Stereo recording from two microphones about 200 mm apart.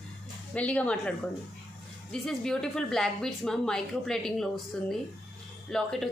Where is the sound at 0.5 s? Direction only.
5° left (ahead or behind).